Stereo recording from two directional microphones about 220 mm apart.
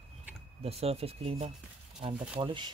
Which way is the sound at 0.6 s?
30° right (ahead or behind).